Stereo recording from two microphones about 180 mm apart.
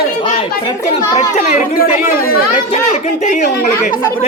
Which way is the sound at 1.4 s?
40° left (ahead or behind).